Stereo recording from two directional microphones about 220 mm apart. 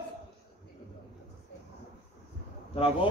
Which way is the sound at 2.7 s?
25° left (ahead or behind).